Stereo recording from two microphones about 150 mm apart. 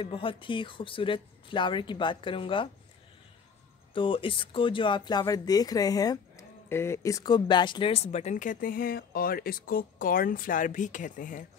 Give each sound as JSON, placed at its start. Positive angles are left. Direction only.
{"t": 0.0, "sound": "speech", "side_deg": 35}
{"t": 3.9, "sound": "speech", "side_deg": 35}